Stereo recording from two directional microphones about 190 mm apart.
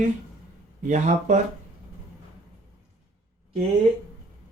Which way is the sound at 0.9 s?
40° right (ahead or behind).